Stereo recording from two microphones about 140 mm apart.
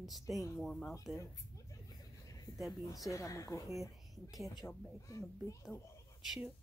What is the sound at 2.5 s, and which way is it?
Speech, centre (ahead or behind).